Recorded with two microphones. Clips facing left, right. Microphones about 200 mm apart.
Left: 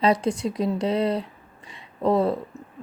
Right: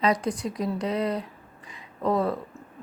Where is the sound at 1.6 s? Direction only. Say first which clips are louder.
Left 4 dB; 30° left (ahead or behind).